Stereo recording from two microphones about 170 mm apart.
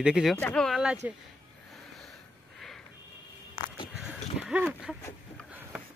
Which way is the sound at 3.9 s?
5° right (ahead or behind).